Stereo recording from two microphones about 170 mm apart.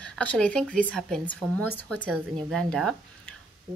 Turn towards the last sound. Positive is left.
turn(degrees=5)  # may be behind; listen again after turning